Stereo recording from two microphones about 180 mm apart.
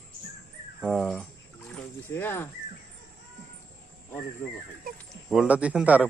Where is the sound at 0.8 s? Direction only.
Centre (ahead or behind).